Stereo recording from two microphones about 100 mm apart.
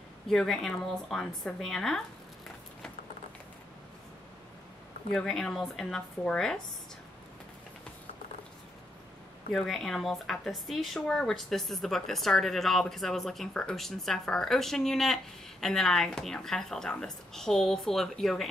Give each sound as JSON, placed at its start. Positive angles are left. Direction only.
{"t": 0.3, "sound": "speech", "side_deg": 5}
{"t": 5.1, "sound": "speech", "side_deg": 5}
{"t": 9.5, "sound": "speech", "side_deg": 0}